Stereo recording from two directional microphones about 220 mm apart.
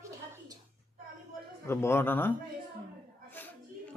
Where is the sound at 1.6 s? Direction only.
10° left (ahead or behind).